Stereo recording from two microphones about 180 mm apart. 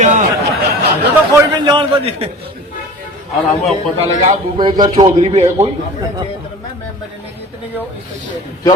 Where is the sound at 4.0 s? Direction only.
40° right (ahead or behind).